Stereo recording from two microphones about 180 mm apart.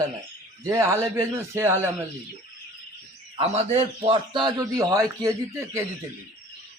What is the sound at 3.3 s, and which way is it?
A man's voice, 35° right (ahead or behind).